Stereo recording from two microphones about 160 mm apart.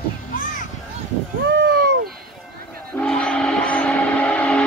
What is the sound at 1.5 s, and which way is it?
Boat, 85° right.